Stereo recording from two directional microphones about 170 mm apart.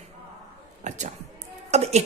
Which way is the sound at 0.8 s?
45° right (ahead or behind).